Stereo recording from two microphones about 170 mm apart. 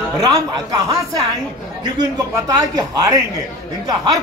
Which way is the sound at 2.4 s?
20° right (ahead or behind).